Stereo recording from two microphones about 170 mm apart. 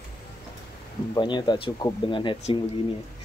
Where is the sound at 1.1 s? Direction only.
25° left (ahead or behind).